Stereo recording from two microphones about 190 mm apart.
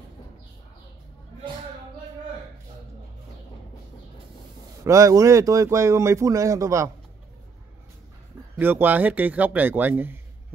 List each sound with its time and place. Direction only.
4.8 s speech: 15° right (ahead or behind)
8.5 s speech: 10° right (ahead or behind)